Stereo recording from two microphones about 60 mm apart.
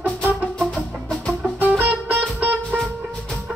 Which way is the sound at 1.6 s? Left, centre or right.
Right.